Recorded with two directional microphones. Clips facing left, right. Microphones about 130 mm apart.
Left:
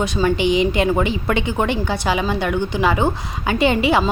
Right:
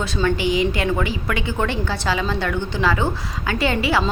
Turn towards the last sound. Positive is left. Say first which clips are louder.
# left 4 dB
turn(degrees=20)  # may be behind; listen again after turning